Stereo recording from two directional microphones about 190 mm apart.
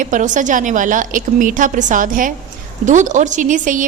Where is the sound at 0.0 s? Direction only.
40° right (ahead or behind).